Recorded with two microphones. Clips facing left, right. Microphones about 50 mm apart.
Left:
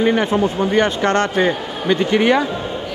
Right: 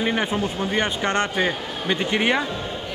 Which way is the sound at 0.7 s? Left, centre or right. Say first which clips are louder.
Left 6 dB; centre.